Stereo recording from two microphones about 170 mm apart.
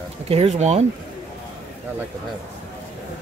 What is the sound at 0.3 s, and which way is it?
Speech, 40° right (ahead or behind).